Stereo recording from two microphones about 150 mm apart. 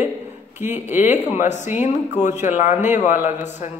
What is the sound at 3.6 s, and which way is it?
Speech, 50° left (ahead or behind).